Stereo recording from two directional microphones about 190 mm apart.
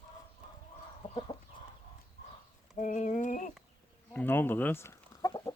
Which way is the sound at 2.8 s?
40° left (ahead or behind).